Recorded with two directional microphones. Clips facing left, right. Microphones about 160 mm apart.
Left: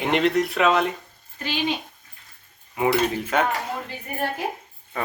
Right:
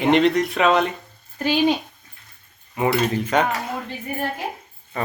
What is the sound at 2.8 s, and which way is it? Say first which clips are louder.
Speech: right 1 dB; 10° left (ahead or behind).